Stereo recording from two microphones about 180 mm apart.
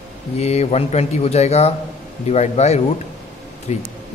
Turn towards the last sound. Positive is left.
turn(degrees=35)  # may be behind; listen again after turning